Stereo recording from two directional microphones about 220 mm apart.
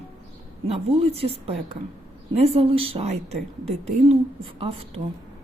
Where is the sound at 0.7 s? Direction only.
25° right (ahead or behind).